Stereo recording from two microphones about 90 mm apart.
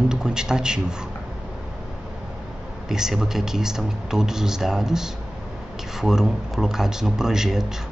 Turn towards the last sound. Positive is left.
turn(degrees=-5)  # may be behind; listen again after turning